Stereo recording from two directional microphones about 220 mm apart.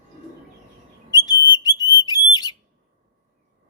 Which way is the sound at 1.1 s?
20° left (ahead or behind).